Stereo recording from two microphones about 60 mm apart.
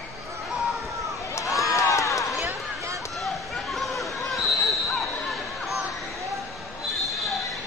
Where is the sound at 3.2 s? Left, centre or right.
Centre.